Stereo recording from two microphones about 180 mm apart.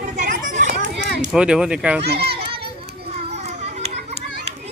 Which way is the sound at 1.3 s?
5° right (ahead or behind).